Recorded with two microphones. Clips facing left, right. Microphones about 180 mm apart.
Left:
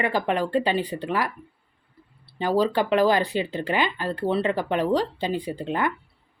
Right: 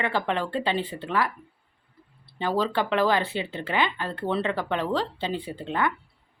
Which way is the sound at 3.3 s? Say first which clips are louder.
Left 5 dB; 40° left (ahead or behind).